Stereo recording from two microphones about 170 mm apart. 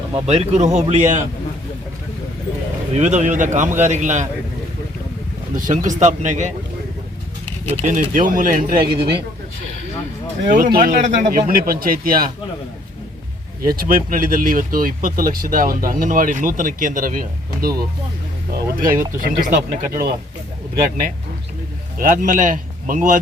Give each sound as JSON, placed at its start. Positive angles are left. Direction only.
{"t": 0.3, "sound": "speech", "side_deg": -40}
{"t": 2.9, "sound": "speech", "side_deg": -45}
{"t": 5.5, "sound": "speech", "side_deg": -50}
{"t": 7.6, "sound": "speech", "side_deg": -45}
{"t": 10.5, "sound": "speech", "side_deg": -60}
{"t": 11.0, "sound": "speech", "side_deg": -45}
{"t": 13.6, "sound": "speech", "side_deg": -60}
{"t": 21.9, "sound": "speech", "side_deg": -50}